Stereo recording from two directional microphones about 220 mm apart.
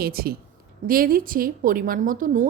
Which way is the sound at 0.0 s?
45° right (ahead or behind).